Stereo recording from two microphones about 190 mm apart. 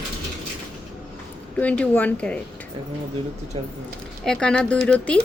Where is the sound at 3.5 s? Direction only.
30° right (ahead or behind).